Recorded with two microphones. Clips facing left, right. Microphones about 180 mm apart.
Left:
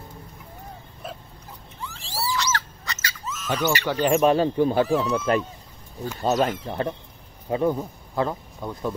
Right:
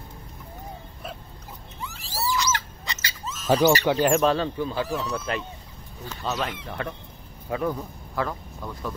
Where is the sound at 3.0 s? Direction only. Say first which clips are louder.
Right 6 dB; 30° right (ahead or behind).